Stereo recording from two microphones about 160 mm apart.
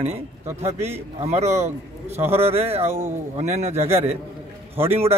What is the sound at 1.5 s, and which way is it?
Speech, 15° right (ahead or behind).